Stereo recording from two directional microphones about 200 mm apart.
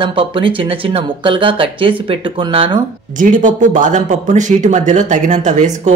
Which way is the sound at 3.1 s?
40° right (ahead or behind).